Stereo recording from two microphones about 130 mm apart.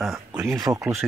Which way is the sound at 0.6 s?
25° right (ahead or behind).